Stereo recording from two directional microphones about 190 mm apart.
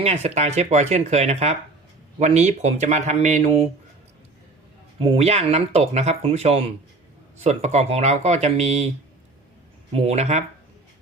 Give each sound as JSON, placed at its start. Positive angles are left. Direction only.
{"t": 0.0, "sound": "speech", "side_deg": -35}
{"t": 4.9, "sound": "speech", "side_deg": -30}
{"t": 9.9, "sound": "speech", "side_deg": -35}